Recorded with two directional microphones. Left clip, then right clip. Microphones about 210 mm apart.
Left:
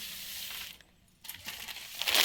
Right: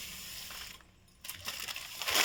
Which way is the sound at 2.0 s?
35° left (ahead or behind).